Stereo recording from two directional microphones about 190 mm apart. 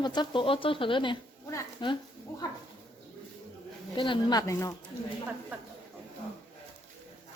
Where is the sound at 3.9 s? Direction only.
25° left (ahead or behind).